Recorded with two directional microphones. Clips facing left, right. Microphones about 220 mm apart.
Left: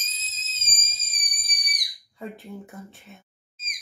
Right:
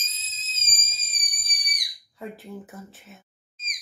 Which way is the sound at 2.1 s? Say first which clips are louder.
Even; centre (ahead or behind).